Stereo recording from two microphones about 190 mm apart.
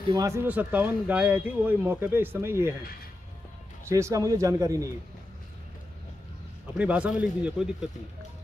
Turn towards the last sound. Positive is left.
turn(degrees=-5)  # may be behind; listen again after turning